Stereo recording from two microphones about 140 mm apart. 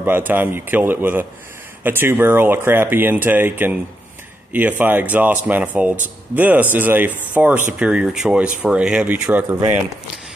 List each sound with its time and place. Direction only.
0.0 s speech: 15° right (ahead or behind)